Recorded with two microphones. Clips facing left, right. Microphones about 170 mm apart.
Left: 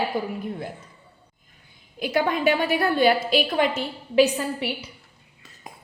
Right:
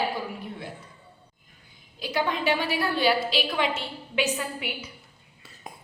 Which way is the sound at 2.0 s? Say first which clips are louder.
Left 4 dB; 55° left (ahead or behind).